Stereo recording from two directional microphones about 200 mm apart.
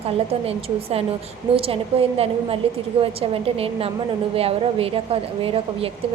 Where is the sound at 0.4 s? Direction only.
30° right (ahead or behind).